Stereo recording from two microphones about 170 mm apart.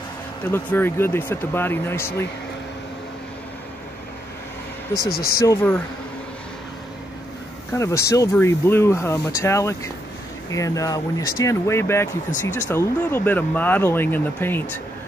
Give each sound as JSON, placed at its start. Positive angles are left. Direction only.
{"t": 0.5, "sound": "speech", "side_deg": 10}
{"t": 5.1, "sound": "speech", "side_deg": 65}
{"t": 5.5, "sound": "speech", "side_deg": 10}
{"t": 7.7, "sound": "speech", "side_deg": 15}